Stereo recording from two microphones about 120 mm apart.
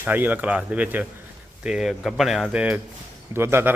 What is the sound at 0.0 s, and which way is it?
A man's voice, 15° right (ahead or behind).